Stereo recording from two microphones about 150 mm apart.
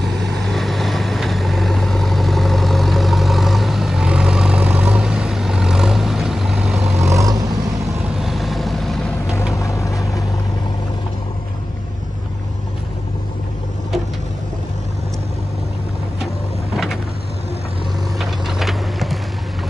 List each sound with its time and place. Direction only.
0.0 s vehicle: centre (ahead or behind)
7.1 s vehicle: 20° right (ahead or behind)
8.2 s vehicle: centre (ahead or behind)
9.5 s vehicle: 20° left (ahead or behind)
16.7 s vehicle: centre (ahead or behind)
18.2 s vehicle: centre (ahead or behind)